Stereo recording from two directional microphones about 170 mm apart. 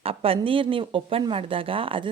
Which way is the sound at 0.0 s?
35° right (ahead or behind).